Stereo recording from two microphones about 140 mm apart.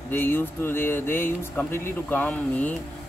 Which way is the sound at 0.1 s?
15° left (ahead or behind).